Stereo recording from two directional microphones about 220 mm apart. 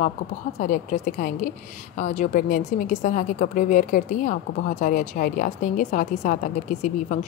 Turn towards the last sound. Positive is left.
turn(degrees=35)  # may be behind; listen again after turning